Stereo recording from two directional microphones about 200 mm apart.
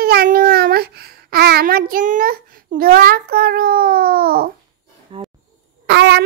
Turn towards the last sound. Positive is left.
turn(degrees=-55)  # may be behind; listen again after turning